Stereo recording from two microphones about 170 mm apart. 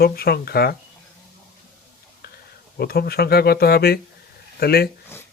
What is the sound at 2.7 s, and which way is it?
Speech, 65° left (ahead or behind).